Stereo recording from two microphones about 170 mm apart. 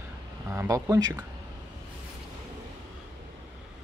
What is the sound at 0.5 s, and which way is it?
Speech, 15° right (ahead or behind).